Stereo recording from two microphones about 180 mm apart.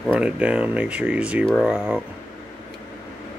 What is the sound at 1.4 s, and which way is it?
Speech, 5° left (ahead or behind).